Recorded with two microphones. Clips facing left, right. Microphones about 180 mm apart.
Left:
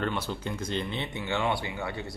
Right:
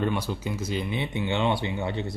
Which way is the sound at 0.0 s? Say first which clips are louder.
Right 3 dB; 10° right (ahead or behind).